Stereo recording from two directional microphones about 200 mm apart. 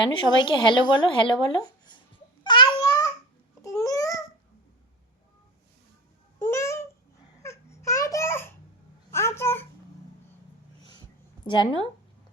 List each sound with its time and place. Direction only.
0.0 s speech: 25° left (ahead or behind)
2.4 s babbling: 20° left (ahead or behind)
6.4 s a sound: 15° left (ahead or behind)
7.4 s babbling: 15° left (ahead or behind)
9.1 s a sound: 15° left (ahead or behind)
11.4 s speech: 25° left (ahead or behind)